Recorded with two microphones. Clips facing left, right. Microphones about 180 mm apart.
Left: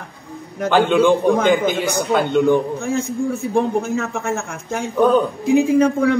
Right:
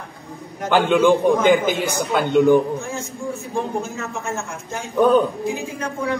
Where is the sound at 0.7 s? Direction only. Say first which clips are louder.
Left 1 dB; 5° right (ahead or behind).